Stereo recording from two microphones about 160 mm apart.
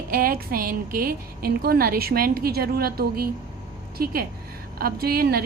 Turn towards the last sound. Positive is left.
turn(degrees=-70)  # may be behind; listen again after turning